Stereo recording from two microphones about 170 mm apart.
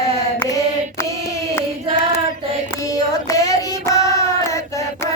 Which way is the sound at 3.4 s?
20° left (ahead or behind).